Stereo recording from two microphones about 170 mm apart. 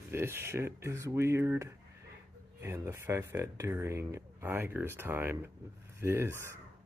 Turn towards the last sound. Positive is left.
turn(degrees=-15)  # may be behind; listen again after turning